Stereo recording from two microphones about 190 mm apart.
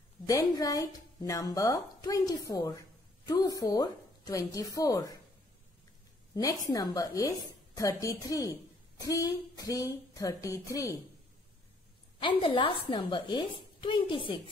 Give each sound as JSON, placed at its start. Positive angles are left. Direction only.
{"t": 0.3, "sound": "a woman's voice", "side_deg": 20}
{"t": 6.3, "sound": "a woman's voice", "side_deg": 20}
{"t": 12.2, "sound": "a woman's voice", "side_deg": 25}